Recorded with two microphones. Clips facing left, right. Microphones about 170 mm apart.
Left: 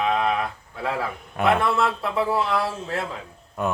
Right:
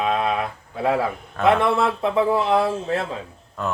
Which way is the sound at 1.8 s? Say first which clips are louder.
Right 3 dB; 20° right (ahead or behind).